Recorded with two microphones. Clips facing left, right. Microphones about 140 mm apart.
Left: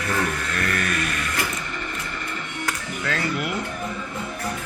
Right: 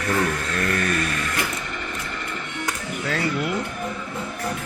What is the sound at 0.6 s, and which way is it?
Vehicle, 30° right (ahead or behind).